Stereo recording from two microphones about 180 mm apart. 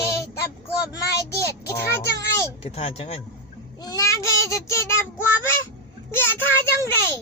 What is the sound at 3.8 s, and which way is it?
A child's voice, 20° left (ahead or behind).